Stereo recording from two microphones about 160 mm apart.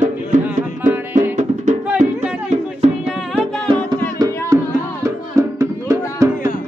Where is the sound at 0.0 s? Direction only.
55° right (ahead or behind).